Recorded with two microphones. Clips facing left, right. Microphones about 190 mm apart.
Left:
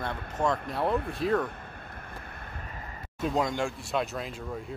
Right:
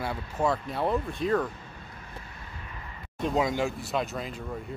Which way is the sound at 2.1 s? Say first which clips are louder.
Left 1 dB; 55° left (ahead or behind).